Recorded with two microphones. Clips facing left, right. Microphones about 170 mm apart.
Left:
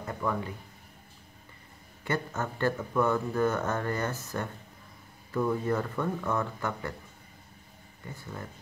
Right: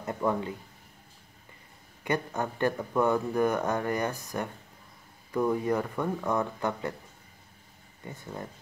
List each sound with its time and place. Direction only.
0.0 s speech: 20° right (ahead or behind)
2.0 s speech: 15° right (ahead or behind)
8.1 s speech: 20° right (ahead or behind)